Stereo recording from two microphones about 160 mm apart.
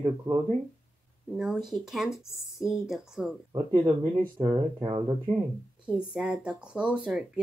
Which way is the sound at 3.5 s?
20° right (ahead or behind).